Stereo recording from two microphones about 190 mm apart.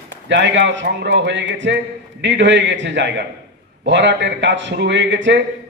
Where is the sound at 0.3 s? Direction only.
70° right (ahead or behind).